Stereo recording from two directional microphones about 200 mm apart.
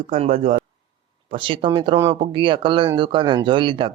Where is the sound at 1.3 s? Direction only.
25° right (ahead or behind).